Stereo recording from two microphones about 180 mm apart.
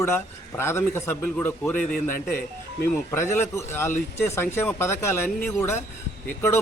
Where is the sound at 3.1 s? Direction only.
15° left (ahead or behind).